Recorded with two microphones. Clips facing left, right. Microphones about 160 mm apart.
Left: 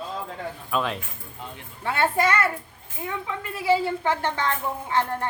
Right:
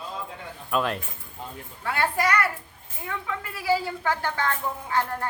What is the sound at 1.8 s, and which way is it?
A woman's voice, 25° left (ahead or behind).